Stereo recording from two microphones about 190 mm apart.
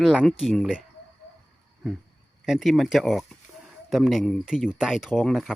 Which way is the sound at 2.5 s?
Centre (ahead or behind).